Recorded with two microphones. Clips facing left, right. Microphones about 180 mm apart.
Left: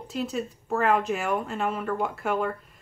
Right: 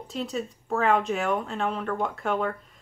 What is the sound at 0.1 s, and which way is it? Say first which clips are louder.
A woman's voice: left 1 dB; 5° left (ahead or behind).